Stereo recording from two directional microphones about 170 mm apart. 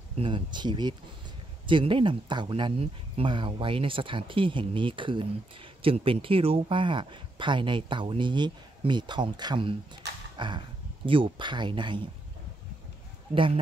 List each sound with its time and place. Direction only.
0.2 s speech: 30° right (ahead or behind)
10.3 s a sound: 25° right (ahead or behind)
11.1 s speech: 30° right (ahead or behind)
13.3 s speech: 30° right (ahead or behind)